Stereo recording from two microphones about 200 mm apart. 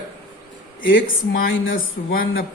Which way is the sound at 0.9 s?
45° left (ahead or behind).